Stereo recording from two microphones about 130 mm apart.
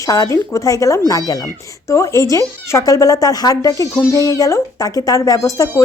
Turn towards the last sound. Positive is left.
turn(degrees=25)  # may be behind; listen again after turning